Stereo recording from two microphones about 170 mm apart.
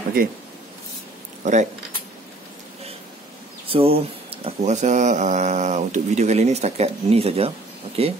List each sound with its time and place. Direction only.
1.4 s speech: 45° right (ahead or behind)
3.6 s speech: 35° right (ahead or behind)